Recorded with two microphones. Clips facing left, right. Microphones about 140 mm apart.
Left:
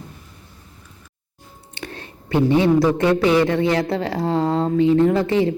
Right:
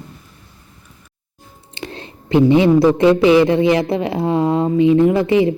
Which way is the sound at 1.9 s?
20° right (ahead or behind).